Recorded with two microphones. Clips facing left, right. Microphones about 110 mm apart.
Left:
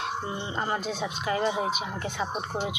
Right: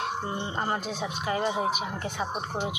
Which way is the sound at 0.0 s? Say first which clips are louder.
Right 1 dB; 45° right (ahead or behind).